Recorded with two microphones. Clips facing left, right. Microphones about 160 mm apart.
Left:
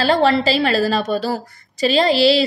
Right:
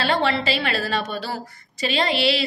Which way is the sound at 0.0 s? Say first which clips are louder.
Left 6 dB; 35° left (ahead or behind).